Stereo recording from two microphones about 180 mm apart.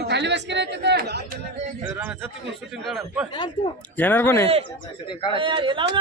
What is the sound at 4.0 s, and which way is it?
Speech, 10° left (ahead or behind).